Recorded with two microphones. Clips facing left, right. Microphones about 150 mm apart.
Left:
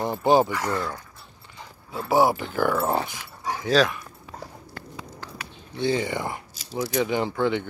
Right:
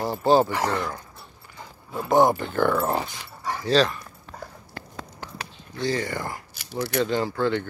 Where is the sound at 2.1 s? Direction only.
5° left (ahead or behind).